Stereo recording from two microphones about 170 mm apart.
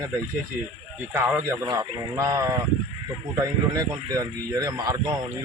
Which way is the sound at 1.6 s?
20° right (ahead or behind).